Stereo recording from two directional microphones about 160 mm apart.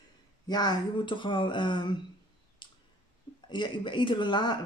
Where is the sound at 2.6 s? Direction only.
30° left (ahead or behind).